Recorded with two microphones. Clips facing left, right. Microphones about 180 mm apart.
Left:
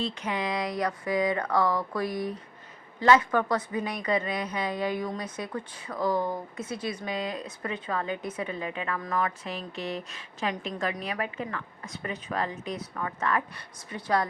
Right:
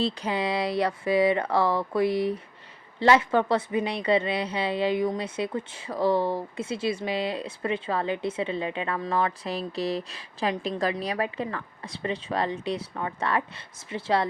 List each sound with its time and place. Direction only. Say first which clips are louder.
0.0 s a woman's voice: right 4 dB; 30° right (ahead or behind)